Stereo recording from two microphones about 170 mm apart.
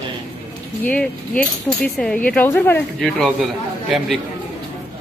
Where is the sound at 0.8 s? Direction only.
10° left (ahead or behind).